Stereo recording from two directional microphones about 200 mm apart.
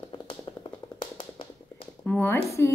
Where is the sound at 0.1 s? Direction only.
25° left (ahead or behind).